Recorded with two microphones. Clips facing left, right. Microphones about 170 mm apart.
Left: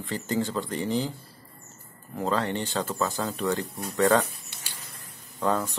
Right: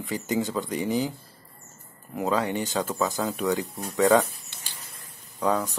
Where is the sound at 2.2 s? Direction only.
10° right (ahead or behind).